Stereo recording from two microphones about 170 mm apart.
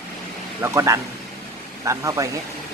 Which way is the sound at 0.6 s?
15° right (ahead or behind).